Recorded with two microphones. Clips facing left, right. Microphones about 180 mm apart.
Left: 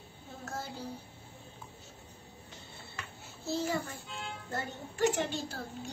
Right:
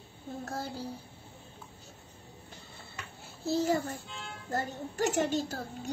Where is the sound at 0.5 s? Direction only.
35° right (ahead or behind).